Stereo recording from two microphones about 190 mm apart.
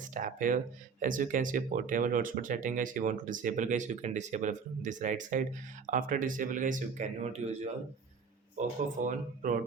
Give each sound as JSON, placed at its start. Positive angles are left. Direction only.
{"t": 0.1, "sound": "speech", "side_deg": -45}